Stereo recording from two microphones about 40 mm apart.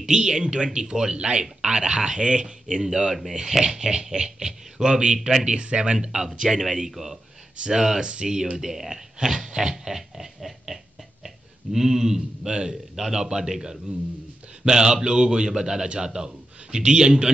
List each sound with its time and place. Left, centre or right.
0.0 s a man's voice: right
5.9 s a man's voice: centre
8.5 s a man's voice: centre